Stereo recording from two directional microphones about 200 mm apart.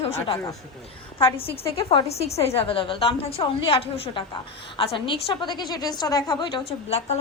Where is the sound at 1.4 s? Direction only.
30° left (ahead or behind).